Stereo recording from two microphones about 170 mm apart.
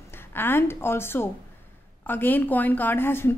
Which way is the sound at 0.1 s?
15° left (ahead or behind).